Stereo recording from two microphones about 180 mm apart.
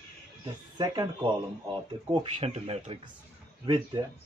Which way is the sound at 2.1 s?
30° right (ahead or behind).